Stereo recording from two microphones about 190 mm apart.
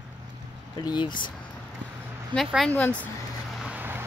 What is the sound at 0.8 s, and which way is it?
Speech, 25° left (ahead or behind).